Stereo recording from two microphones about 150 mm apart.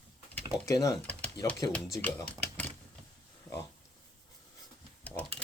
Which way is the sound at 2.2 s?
10° left (ahead or behind).